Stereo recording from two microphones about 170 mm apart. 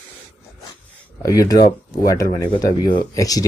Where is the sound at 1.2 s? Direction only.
20° left (ahead or behind).